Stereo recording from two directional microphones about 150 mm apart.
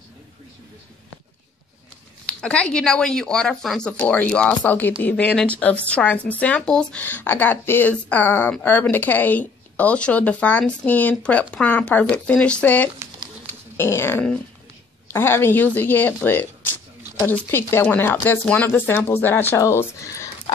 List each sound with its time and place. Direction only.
2.2 s speech: 5° left (ahead or behind)